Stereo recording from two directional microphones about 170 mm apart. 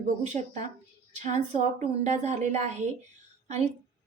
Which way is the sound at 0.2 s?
40° right (ahead or behind).